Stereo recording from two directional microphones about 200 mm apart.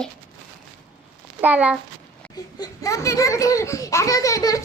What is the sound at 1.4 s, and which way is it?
Speech, 5° right (ahead or behind).